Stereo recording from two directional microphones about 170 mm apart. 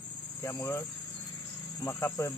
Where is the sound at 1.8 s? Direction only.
10° left (ahead or behind).